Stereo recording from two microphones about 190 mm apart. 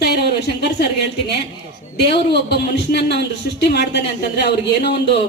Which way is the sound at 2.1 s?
60° left (ahead or behind).